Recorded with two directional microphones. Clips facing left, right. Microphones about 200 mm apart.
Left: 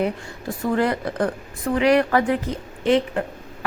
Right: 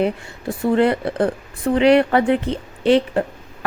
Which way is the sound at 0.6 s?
25° right (ahead or behind).